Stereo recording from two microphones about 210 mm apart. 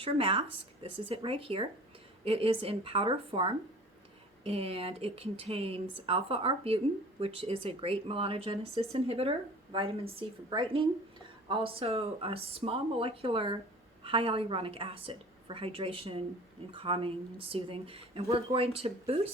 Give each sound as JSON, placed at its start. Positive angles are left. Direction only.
{"t": 0.0, "sound": "speech", "side_deg": -25}